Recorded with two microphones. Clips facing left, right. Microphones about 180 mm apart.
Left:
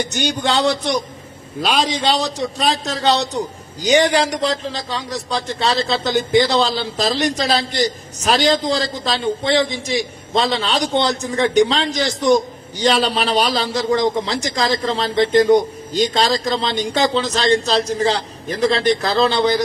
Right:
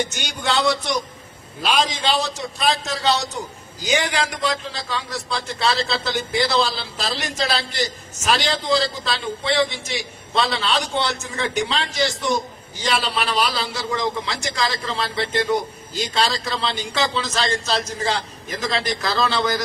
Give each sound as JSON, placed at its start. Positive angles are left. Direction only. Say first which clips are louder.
{"t": 0.1, "sound": "a man's voice", "louder": "left 5 dB", "side_deg": 35}
{"t": 10.8, "sound": "a man's voice", "louder": "left 6 dB", "side_deg": 40}